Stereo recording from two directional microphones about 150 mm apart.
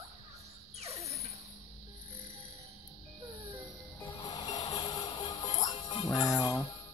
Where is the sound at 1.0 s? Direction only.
45° right (ahead or behind).